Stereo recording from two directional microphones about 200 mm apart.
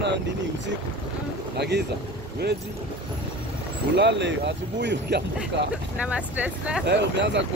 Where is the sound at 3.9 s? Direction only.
60° right (ahead or behind).